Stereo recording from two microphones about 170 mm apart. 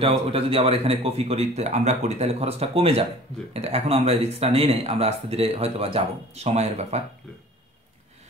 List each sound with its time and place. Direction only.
0.3 s speech: 35° right (ahead or behind)